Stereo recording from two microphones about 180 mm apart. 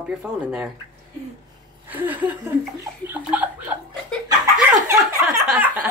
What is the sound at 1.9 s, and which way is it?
Speech, 10° right (ahead or behind).